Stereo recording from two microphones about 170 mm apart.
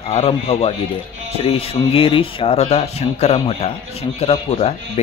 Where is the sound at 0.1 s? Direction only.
35° left (ahead or behind).